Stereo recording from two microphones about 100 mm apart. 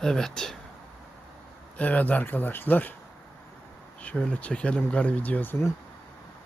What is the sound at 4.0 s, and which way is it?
Speech, 15° left (ahead or behind).